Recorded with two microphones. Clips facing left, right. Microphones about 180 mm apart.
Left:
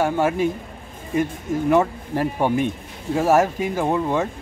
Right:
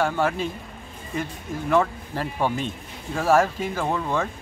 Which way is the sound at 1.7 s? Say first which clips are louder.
Left 2 dB; 20° left (ahead or behind).